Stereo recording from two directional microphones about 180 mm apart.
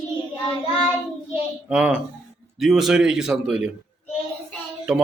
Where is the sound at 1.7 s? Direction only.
5° right (ahead or behind).